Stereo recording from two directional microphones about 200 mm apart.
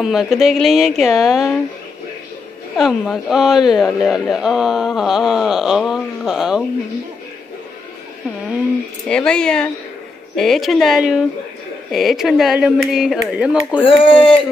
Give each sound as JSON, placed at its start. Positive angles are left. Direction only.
{"t": 0.0, "sound": "speech", "side_deg": 0}
{"t": 2.8, "sound": "speech", "side_deg": 0}
{"t": 9.0, "sound": "speech", "side_deg": 5}
{"t": 13.8, "sound": "speech", "side_deg": 25}